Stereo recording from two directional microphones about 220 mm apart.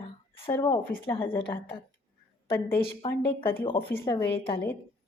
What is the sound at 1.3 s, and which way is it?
Speech, 25° left (ahead or behind).